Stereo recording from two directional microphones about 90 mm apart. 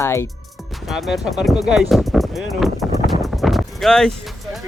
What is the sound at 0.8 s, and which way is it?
Speech, centre (ahead or behind).